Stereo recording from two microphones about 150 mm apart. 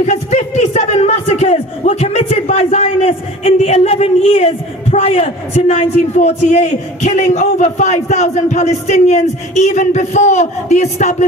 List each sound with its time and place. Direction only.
0.0 s speech: 50° left (ahead or behind)